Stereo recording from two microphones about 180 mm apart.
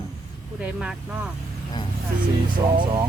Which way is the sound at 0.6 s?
5° right (ahead or behind).